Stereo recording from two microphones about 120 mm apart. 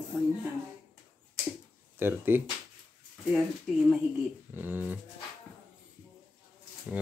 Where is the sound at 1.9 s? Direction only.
15° right (ahead or behind).